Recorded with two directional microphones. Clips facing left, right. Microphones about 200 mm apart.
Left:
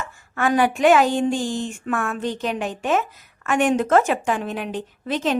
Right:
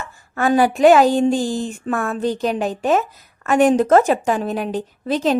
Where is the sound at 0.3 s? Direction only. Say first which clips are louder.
Right 3 dB; 35° right (ahead or behind).